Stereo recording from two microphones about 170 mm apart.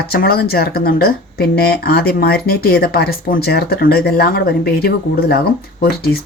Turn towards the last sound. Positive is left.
turn(degrees=65)  # may be behind; listen again after turning